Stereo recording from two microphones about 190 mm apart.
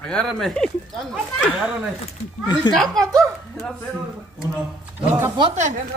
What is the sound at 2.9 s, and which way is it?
Speech, 15° right (ahead or behind).